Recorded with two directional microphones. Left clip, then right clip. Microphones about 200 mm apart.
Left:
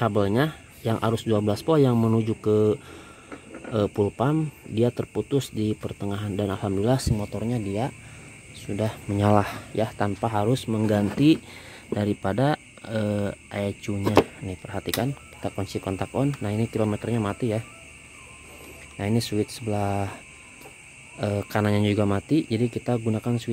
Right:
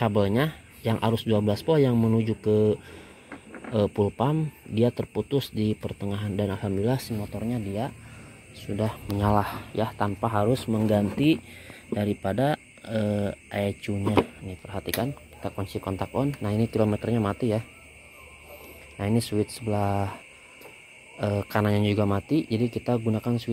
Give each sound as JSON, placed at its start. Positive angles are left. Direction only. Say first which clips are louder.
{"t": 0.0, "sound": "speech", "louder": "left 1 dB", "side_deg": 20}
{"t": 8.6, "sound": "speech", "louder": "left 1 dB", "side_deg": 25}
{"t": 14.5, "sound": "speech", "louder": "left 2 dB", "side_deg": 35}
{"t": 16.4, "sound": "speech", "louder": "right 1 dB", "side_deg": 15}
{"t": 18.9, "sound": "speech", "louder": "left 1 dB", "side_deg": 25}
{"t": 21.2, "sound": "speech", "louder": "even", "side_deg": 25}